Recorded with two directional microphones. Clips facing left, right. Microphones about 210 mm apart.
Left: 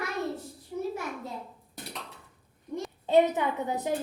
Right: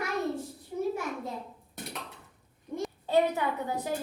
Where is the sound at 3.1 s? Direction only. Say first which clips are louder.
Left 3 dB; 20° left (ahead or behind).